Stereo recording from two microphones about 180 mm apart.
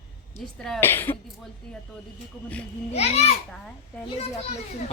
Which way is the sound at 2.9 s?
35° left (ahead or behind).